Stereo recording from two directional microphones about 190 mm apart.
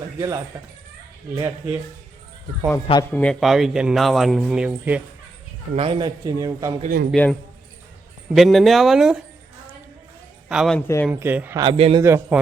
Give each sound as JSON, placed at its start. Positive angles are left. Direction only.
{"t": 0.2, "sound": "a man's voice", "side_deg": -20}
{"t": 3.1, "sound": "a man's voice", "side_deg": 5}
{"t": 5.7, "sound": "a man's voice", "side_deg": -30}
{"t": 7.1, "sound": "a man's voice", "side_deg": 5}
{"t": 10.5, "sound": "a man's voice", "side_deg": -5}
{"t": 10.8, "sound": "speech", "side_deg": 10}
{"t": 11.1, "sound": "speech", "side_deg": -10}
{"t": 11.6, "sound": "a man's voice", "side_deg": -30}
{"t": 12.0, "sound": "speech", "side_deg": -15}